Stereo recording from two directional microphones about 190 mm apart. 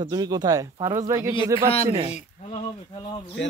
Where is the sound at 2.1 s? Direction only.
35° left (ahead or behind).